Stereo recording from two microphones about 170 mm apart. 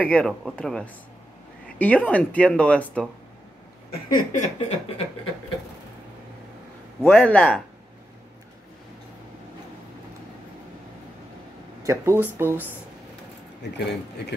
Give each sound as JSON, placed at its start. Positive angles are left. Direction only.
{"t": 0.0, "sound": "speech", "side_deg": 5}
{"t": 4.1, "sound": "a sound", "side_deg": 45}
{"t": 4.6, "sound": "a sound", "side_deg": 35}
{"t": 7.1, "sound": "speech", "side_deg": 5}
{"t": 11.8, "sound": "speech", "side_deg": -15}
{"t": 13.6, "sound": "speech", "side_deg": 80}